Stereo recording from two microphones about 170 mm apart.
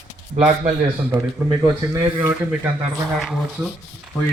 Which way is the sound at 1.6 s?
15° right (ahead or behind).